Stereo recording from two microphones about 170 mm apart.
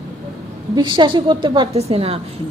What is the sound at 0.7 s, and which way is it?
A woman's voice, 30° right (ahead or behind).